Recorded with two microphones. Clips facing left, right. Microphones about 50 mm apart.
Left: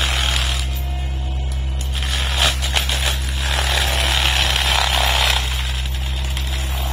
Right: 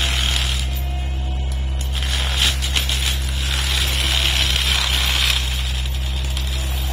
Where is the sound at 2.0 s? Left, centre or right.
Centre.